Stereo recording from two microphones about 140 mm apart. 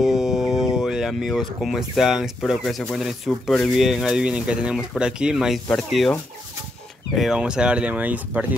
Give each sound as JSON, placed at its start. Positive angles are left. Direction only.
{"t": 0.0, "sound": "speech", "side_deg": 0}
{"t": 7.2, "sound": "speech", "side_deg": -5}